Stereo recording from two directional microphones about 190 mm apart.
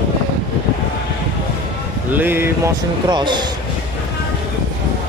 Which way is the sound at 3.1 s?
25° right (ahead or behind).